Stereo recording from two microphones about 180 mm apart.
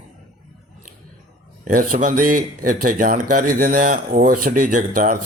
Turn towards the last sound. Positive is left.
turn(degrees=-50)  # may be behind; listen again after turning